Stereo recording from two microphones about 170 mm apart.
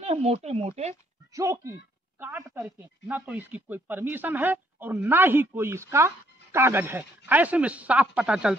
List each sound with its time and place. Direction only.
0.0 s speech: 40° right (ahead or behind)
1.3 s a woman's voice: 15° right (ahead or behind)